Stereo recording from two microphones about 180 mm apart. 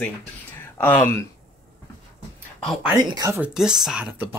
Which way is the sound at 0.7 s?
10° left (ahead or behind).